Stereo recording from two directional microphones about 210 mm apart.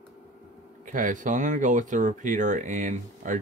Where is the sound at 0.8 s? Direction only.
40° right (ahead or behind).